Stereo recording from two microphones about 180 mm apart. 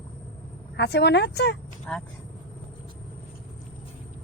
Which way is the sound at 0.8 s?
70° left (ahead or behind).